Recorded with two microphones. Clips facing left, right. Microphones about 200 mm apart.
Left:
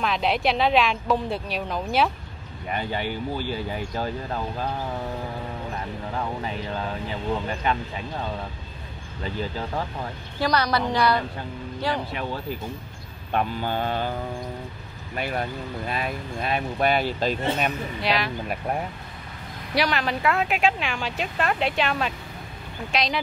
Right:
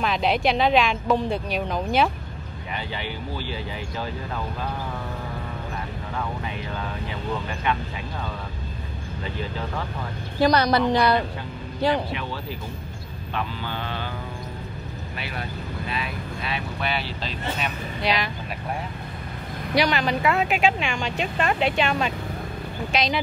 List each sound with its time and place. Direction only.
0.0 s speech: centre (ahead or behind)
2.7 s speech: 50° left (ahead or behind)
6.1 s speech: 30° left (ahead or behind)
10.4 s a woman's voice: 20° right (ahead or behind)
12.1 s speech: 45° left (ahead or behind)
15.1 s speech: 45° left (ahead or behind)
18.0 s speech: centre (ahead or behind)
19.7 s speech: centre (ahead or behind)